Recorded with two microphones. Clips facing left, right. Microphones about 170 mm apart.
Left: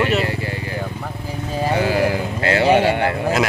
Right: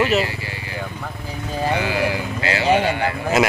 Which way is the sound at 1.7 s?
45° left (ahead or behind).